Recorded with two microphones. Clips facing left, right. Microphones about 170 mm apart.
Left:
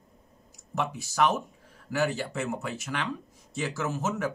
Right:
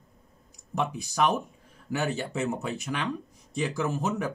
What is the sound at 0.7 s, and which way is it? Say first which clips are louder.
Speech: even; 15° right (ahead or behind).